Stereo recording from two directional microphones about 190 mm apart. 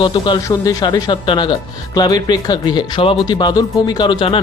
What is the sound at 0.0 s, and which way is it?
Speech, 25° left (ahead or behind).